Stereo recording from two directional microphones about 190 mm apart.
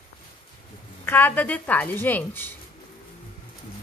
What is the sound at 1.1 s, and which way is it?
A woman's voice, 10° left (ahead or behind).